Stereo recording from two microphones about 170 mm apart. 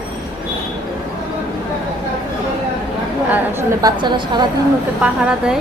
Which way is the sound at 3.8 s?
25° right (ahead or behind).